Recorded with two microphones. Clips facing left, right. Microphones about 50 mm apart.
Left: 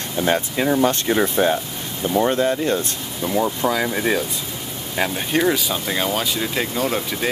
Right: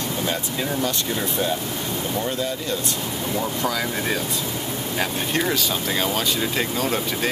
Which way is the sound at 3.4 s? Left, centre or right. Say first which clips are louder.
Left 6 dB; left.